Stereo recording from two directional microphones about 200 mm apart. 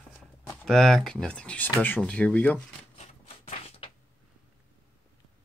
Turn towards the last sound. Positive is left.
turn(degrees=30)  # may be behind; listen again after turning